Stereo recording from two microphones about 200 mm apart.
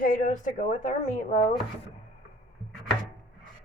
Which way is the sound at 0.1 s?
40° left (ahead or behind).